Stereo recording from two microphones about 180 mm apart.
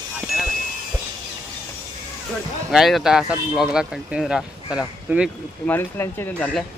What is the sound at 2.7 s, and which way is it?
Speech, centre (ahead or behind).